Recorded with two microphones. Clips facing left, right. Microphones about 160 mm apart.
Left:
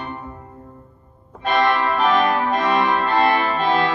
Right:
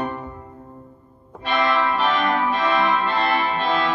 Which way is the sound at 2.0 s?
45° left (ahead or behind).